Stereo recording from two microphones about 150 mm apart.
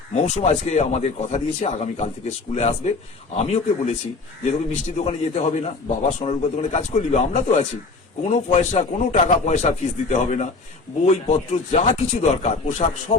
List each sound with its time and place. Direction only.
0.2 s a man's voice: 45° left (ahead or behind)